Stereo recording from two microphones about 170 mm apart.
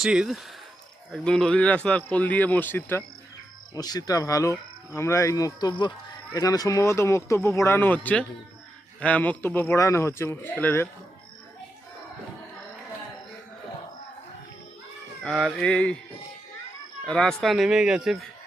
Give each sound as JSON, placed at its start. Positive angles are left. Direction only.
{"t": 0.0, "sound": "speech", "side_deg": -5}
{"t": 3.8, "sound": "speech", "side_deg": 25}
{"t": 15.2, "sound": "speech", "side_deg": 5}
{"t": 17.1, "sound": "speech", "side_deg": 5}